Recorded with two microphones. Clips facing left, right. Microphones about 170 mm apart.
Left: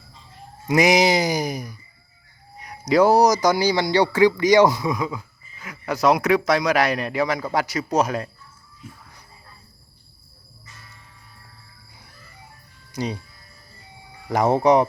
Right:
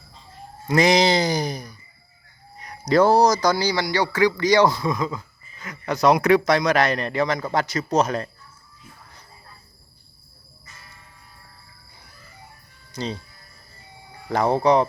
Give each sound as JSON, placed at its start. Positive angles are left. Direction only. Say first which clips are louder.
{"t": 0.7, "sound": "speech", "louder": "left 1 dB", "side_deg": 15}
{"t": 2.9, "sound": "speech", "louder": "left 1 dB", "side_deg": 15}
{"t": 12.9, "sound": "speech", "louder": "left 2 dB", "side_deg": 15}
{"t": 14.3, "sound": "speech", "louder": "left 1 dB", "side_deg": 15}